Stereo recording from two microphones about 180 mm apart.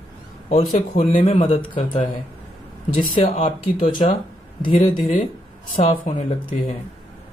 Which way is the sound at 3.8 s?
25° left (ahead or behind).